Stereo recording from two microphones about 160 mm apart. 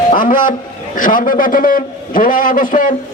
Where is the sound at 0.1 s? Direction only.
55° left (ahead or behind).